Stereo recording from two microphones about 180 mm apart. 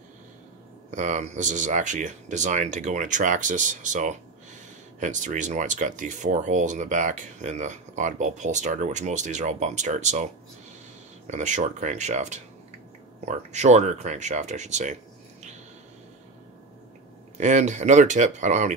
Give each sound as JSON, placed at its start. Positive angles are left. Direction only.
{"t": 0.9, "sound": "speech", "side_deg": -40}
{"t": 17.4, "sound": "speech", "side_deg": -40}